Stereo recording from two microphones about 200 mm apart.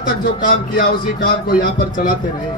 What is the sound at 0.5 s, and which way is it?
A man's voice, 45° left (ahead or behind).